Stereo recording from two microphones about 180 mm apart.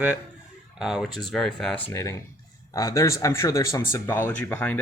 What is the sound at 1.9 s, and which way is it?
Speech, 15° left (ahead or behind).